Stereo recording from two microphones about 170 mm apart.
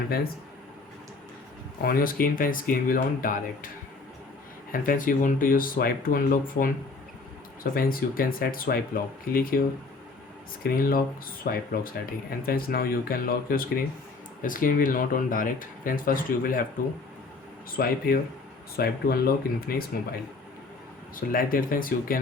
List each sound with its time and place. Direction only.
1.8 s speech: 60° left (ahead or behind)
4.7 s speech: 55° left (ahead or behind)
10.6 s speech: 60° left (ahead or behind)
17.7 s speech: 60° left (ahead or behind)
21.2 s speech: 55° left (ahead or behind)